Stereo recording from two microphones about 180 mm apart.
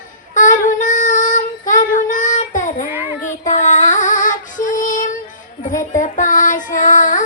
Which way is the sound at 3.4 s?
45° left (ahead or behind).